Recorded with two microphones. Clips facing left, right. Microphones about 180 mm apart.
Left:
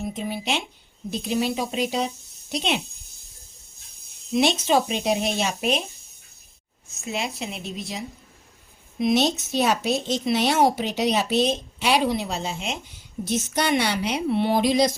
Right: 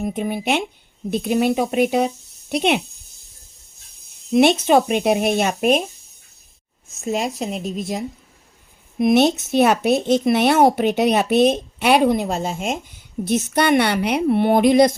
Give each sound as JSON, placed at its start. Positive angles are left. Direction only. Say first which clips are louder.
{"t": 0.0, "sound": "speech", "louder": "right 6 dB", "side_deg": -55}
{"t": 4.3, "sound": "speech", "louder": "right 6 dB", "side_deg": -60}
{"t": 7.0, "sound": "a woman's voice", "louder": "right 7 dB", "side_deg": -45}
{"t": 13.2, "sound": "speech", "louder": "right 6 dB", "side_deg": -60}